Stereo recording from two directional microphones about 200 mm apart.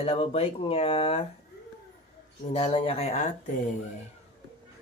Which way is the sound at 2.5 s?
30° left (ahead or behind).